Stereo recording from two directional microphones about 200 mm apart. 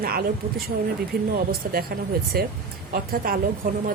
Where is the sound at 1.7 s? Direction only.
50° right (ahead or behind).